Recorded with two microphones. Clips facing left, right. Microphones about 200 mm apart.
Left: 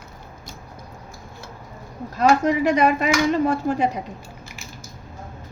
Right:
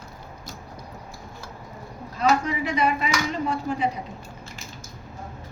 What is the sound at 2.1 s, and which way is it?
Speech, 45° left (ahead or behind).